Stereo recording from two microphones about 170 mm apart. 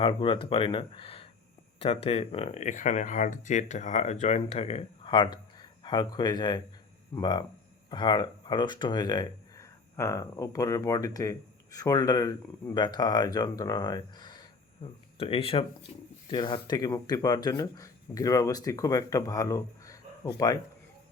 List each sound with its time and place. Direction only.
0.0 s speech: 30° left (ahead or behind)
16.3 s speech: 25° left (ahead or behind)